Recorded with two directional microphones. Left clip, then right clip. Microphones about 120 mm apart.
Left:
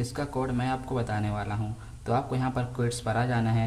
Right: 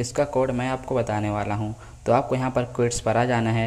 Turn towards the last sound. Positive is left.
turn(degrees=-40)  # may be behind; listen again after turning